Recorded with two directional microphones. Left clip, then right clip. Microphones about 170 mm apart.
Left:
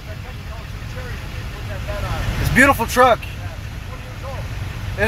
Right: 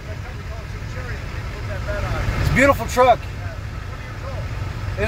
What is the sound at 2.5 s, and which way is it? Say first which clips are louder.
Speech: left 2 dB; 25° left (ahead or behind).